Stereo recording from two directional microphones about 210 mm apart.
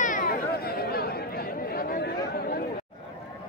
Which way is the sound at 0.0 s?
40° left (ahead or behind).